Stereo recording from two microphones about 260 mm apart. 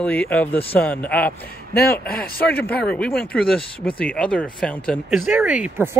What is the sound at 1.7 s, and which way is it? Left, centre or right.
Speech, left.